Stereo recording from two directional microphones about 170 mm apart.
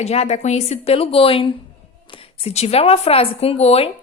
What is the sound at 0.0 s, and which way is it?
A woman's voice, 40° left (ahead or behind).